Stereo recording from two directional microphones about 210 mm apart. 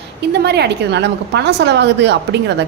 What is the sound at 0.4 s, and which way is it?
A woman's voice, 50° right (ahead or behind).